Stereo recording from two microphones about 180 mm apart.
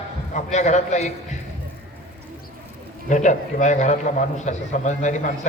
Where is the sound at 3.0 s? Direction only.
40° left (ahead or behind).